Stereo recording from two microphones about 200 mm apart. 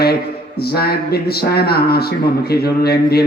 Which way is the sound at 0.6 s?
50° left (ahead or behind).